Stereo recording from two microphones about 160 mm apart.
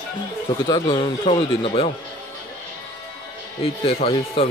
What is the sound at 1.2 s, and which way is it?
Speech, 35° left (ahead or behind).